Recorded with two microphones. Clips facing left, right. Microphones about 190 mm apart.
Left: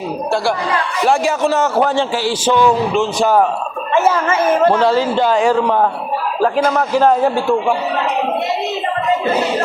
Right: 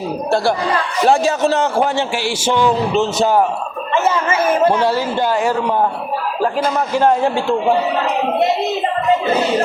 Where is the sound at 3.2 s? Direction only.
15° right (ahead or behind).